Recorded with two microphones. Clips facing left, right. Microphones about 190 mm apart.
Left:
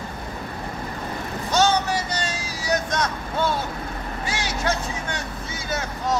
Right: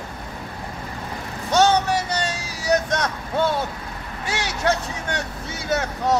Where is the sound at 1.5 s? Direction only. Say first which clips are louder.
Right 3 dB; 65° right (ahead or behind).